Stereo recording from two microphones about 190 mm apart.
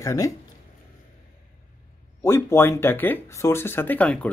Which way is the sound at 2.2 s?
15° left (ahead or behind).